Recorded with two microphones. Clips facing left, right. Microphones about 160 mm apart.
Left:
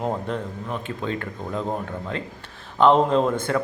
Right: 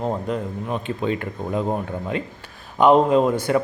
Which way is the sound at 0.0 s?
5° right (ahead or behind).